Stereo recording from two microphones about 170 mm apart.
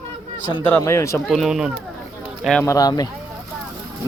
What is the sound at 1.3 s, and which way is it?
A man's voice, centre (ahead or behind).